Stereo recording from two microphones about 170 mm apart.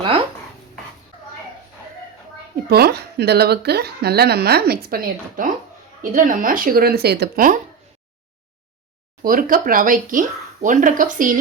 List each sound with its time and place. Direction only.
2.6 s speech: 65° right (ahead or behind)
9.2 s speech: 55° right (ahead or behind)